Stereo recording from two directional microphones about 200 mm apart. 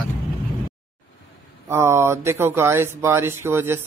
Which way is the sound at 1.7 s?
10° right (ahead or behind).